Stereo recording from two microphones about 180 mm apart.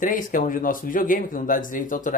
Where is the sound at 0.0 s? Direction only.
45° left (ahead or behind).